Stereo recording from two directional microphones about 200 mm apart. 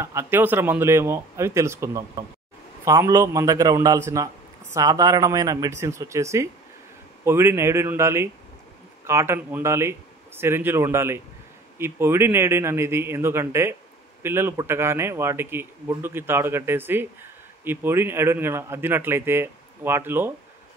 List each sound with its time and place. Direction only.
0.0 s a man's voice: 15° right (ahead or behind)